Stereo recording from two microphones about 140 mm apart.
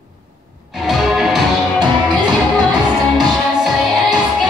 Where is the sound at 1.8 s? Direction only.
30° right (ahead or behind).